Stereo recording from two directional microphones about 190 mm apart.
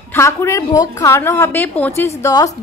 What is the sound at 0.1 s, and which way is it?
A woman's voice, 15° left (ahead or behind).